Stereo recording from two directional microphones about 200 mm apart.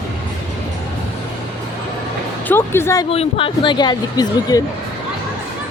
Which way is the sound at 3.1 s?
30° left (ahead or behind).